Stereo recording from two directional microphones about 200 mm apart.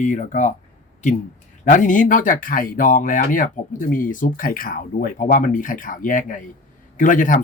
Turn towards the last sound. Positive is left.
turn(degrees=40)  # may be behind; listen again after turning